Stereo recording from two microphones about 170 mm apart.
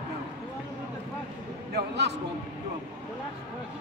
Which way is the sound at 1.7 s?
90° right.